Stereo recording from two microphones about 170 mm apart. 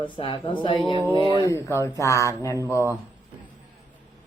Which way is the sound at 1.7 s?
15° left (ahead or behind).